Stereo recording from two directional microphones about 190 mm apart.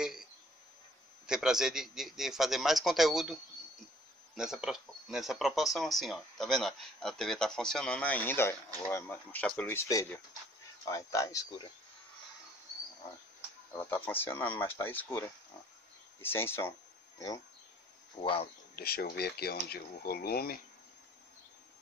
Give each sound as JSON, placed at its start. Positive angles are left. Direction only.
{"t": 0.0, "sound": "a sound", "side_deg": 0}
{"t": 1.2, "sound": "speech", "side_deg": -5}
{"t": 4.4, "sound": "speech", "side_deg": -5}
{"t": 13.7, "sound": "speech", "side_deg": 10}
{"t": 18.2, "sound": "speech", "side_deg": 30}
{"t": 18.8, "sound": "speech", "side_deg": 55}